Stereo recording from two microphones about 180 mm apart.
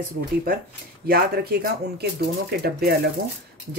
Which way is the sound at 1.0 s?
55° right (ahead or behind).